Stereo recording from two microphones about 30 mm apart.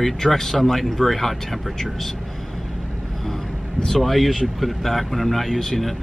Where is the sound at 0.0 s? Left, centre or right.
Centre.